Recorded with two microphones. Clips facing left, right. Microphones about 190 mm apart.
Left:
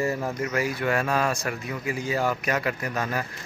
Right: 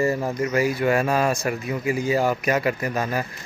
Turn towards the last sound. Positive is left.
turn(degrees=-5)  # may be behind; listen again after turning